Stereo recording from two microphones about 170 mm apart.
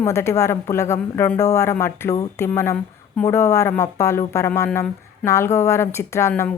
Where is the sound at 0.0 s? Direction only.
15° left (ahead or behind).